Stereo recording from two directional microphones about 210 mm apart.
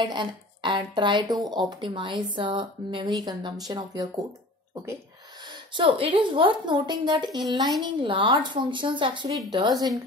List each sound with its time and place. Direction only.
0.0 s speech: 20° right (ahead or behind)
5.8 s speech: 25° right (ahead or behind)